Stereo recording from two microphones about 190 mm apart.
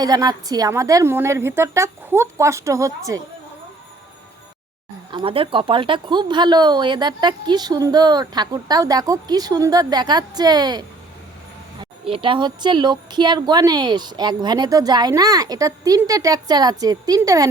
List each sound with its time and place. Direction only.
0.0 s a woman's voice: 20° right (ahead or behind)
5.1 s speech: 30° right (ahead or behind)